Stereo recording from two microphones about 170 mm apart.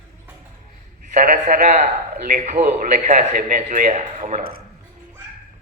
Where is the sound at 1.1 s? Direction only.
55° right (ahead or behind).